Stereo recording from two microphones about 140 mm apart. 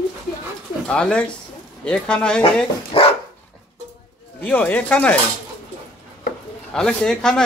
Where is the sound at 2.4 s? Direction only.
40° left (ahead or behind).